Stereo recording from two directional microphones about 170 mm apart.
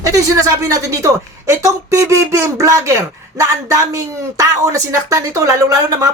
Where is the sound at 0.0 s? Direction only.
20° right (ahead or behind).